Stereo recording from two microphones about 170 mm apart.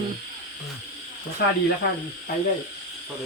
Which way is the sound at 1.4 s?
75° left (ahead or behind).